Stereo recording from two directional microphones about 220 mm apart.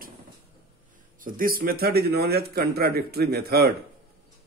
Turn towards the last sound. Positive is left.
turn(degrees=-45)  # may be behind; listen again after turning